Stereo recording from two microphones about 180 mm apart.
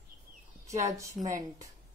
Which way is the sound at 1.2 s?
Centre (ahead or behind).